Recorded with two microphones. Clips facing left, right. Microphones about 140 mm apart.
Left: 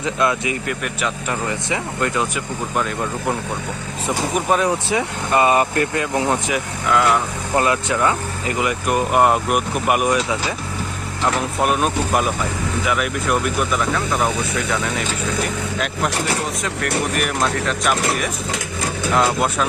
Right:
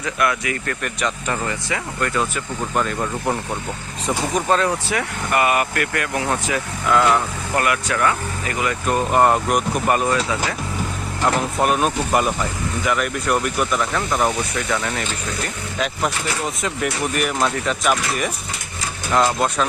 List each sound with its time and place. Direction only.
0.0 s speech: 20° left (ahead or behind)
0.7 s speech: 5° left (ahead or behind)
1.5 s speech: 20° left (ahead or behind)
2.7 s speech: centre (ahead or behind); by 6.6 s 15° left (ahead or behind)
6.8 s speech: centre (ahead or behind)
7.5 s speech: 25° left (ahead or behind)
11.2 s speech: centre (ahead or behind)
17.2 s speech: centre (ahead or behind)